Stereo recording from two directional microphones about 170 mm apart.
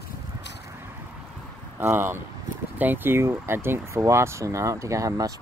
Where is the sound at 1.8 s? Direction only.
15° right (ahead or behind).